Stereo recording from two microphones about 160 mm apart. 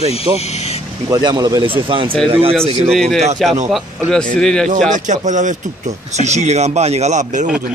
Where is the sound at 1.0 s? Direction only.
20° right (ahead or behind).